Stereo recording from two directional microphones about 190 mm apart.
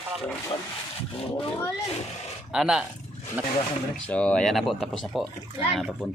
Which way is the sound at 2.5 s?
5° right (ahead or behind).